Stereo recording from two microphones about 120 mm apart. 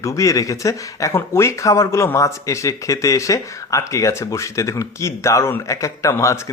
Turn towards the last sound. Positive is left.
turn(degrees=25)  # may be behind; listen again after turning